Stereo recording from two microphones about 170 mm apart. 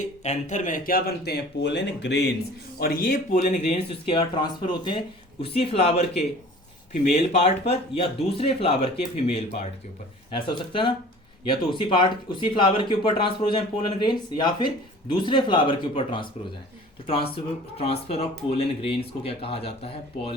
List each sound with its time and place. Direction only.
0.2 s speech: 45° left (ahead or behind); by 2.3 s 85° left
2.7 s speech: 60° left (ahead or behind); by 16.3 s 30° left (ahead or behind)
17.3 s speech: 35° left (ahead or behind)